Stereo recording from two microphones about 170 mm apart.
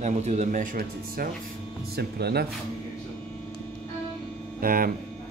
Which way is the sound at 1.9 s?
70° right (ahead or behind).